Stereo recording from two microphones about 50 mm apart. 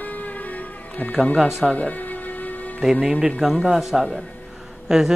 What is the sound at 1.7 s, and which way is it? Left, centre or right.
Music, left.